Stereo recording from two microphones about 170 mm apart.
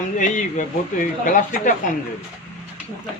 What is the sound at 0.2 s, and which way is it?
Speech, 45° left (ahead or behind).